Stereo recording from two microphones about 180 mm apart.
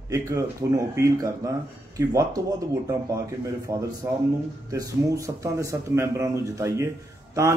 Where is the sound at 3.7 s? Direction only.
25° right (ahead or behind).